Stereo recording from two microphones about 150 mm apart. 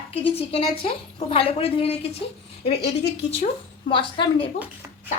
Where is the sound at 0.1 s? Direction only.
40° left (ahead or behind).